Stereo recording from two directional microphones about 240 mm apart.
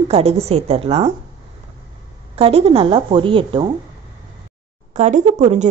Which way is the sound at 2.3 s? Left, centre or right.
Right.